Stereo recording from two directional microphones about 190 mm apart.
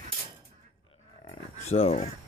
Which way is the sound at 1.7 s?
30° left (ahead or behind).